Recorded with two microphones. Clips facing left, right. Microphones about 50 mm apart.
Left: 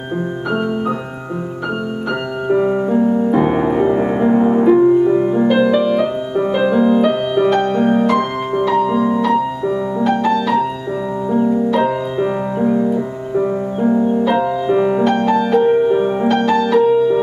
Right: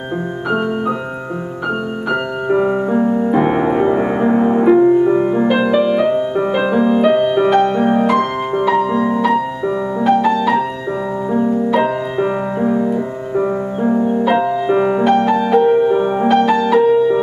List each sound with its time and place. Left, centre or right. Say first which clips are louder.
2.0 s music: right 1 dB; centre
5.5 s music: left 1 dB; centre